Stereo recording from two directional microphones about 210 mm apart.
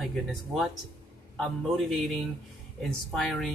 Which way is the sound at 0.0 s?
Centre (ahead or behind).